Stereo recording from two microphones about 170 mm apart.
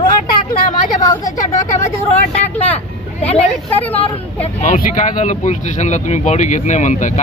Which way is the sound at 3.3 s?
35° left (ahead or behind).